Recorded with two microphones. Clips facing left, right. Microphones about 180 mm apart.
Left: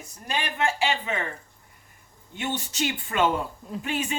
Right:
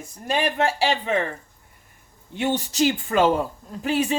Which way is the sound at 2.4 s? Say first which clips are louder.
Right 8 dB; 35° right (ahead or behind).